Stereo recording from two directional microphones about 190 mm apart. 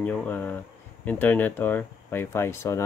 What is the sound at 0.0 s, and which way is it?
Speech, 5° left (ahead or behind).